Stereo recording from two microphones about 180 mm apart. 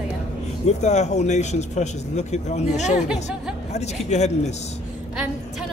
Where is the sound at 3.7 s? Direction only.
40° left (ahead or behind).